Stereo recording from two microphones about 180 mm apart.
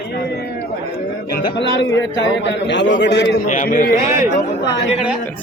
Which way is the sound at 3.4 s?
45° left (ahead or behind).